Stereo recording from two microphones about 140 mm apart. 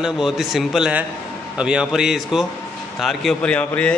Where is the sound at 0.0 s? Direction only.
5° right (ahead or behind).